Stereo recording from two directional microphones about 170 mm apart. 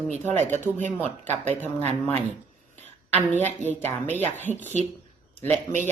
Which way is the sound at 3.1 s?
10° left (ahead or behind).